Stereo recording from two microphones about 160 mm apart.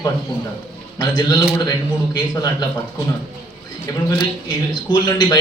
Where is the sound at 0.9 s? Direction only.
25° left (ahead or behind).